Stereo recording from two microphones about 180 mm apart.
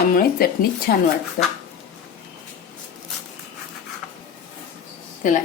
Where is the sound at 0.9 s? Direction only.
50° left (ahead or behind).